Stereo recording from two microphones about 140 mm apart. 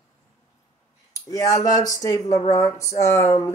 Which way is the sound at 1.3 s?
25° left (ahead or behind).